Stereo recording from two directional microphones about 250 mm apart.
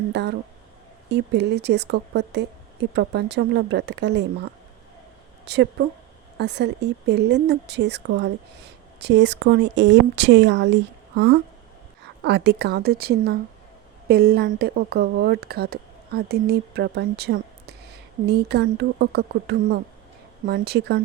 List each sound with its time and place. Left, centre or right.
0.1 s speech: right
5.5 s speech: right
12.2 s speech: right